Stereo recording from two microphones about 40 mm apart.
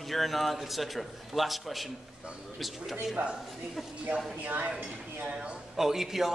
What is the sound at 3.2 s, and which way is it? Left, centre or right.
Speech, right.